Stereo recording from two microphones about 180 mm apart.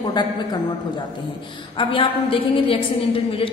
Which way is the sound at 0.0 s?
25° left (ahead or behind).